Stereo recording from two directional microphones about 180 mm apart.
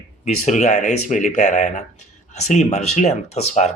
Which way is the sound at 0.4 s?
40° left (ahead or behind).